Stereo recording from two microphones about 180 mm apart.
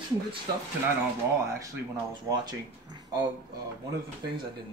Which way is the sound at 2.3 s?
20° right (ahead or behind).